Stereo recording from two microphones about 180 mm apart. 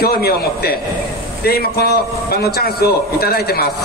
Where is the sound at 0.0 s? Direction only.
60° left (ahead or behind).